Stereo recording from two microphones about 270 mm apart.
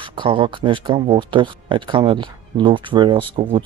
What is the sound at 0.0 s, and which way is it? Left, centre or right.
Speech, centre.